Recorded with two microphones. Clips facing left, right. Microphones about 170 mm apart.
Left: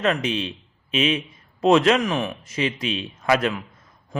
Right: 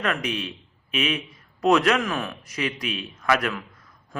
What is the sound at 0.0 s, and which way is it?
A man's voice, 25° left (ahead or behind).